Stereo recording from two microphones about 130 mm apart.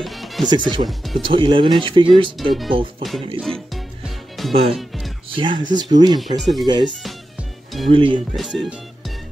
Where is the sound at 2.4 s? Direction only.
Centre (ahead or behind).